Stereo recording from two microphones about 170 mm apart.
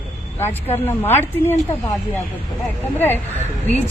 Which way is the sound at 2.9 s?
10° left (ahead or behind).